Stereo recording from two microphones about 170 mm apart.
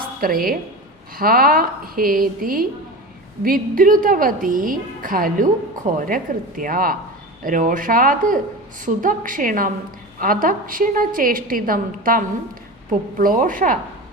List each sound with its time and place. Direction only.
0.2 s a woman's voice: 55° right (ahead or behind)